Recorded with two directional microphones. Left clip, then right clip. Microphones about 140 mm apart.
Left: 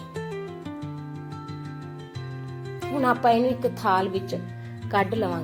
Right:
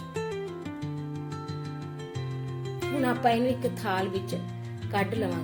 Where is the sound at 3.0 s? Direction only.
15° left (ahead or behind).